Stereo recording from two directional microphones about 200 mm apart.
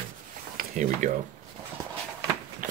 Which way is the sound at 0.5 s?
40° right (ahead or behind).